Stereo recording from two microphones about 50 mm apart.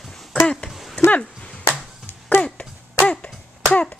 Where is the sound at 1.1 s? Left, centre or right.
Left.